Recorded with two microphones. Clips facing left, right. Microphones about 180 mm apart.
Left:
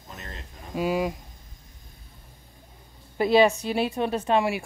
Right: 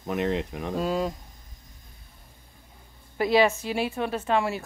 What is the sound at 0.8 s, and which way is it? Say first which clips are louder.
Speech: left 2 dB; 10° left (ahead or behind).